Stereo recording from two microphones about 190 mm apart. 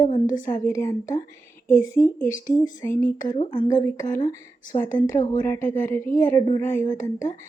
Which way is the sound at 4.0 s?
40° left (ahead or behind).